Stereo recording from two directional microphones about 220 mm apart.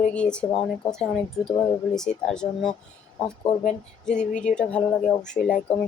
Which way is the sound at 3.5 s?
30° left (ahead or behind).